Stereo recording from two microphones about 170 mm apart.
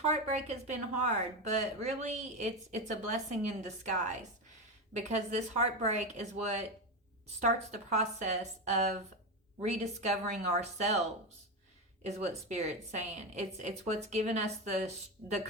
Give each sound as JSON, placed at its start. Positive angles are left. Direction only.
{"t": 0.0, "sound": "a woman's voice", "side_deg": -40}
{"t": 12.0, "sound": "a woman's voice", "side_deg": -40}